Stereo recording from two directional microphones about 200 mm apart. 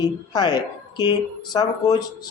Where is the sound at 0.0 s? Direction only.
20° left (ahead or behind).